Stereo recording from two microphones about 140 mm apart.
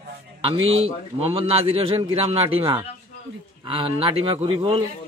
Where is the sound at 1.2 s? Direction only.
40° right (ahead or behind).